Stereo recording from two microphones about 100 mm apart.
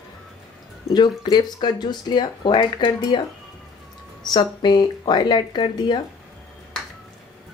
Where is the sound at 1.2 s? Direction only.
45° left (ahead or behind).